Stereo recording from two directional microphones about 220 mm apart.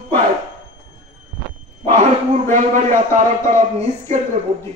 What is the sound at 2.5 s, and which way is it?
Speech, 35° right (ahead or behind).